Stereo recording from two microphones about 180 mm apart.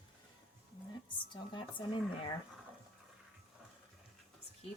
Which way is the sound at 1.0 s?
25° left (ahead or behind).